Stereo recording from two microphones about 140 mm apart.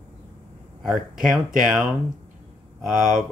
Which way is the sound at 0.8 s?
Centre (ahead or behind).